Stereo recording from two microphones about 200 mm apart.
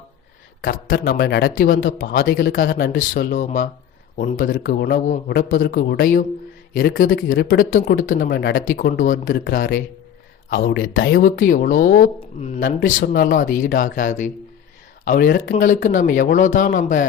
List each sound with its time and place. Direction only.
0.6 s speech: 45° left (ahead or behind)